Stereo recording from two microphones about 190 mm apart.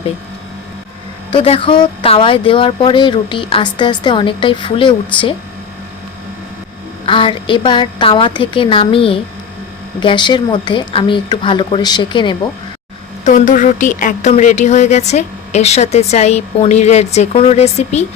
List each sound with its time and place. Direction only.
1.3 s speech: 30° left (ahead or behind)
7.0 s speech: 25° left (ahead or behind)
13.2 s a woman's voice: 40° left (ahead or behind)